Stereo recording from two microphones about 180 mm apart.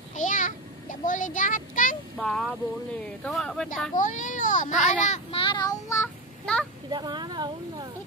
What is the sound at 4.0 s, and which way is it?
A child's voice, 45° left (ahead or behind).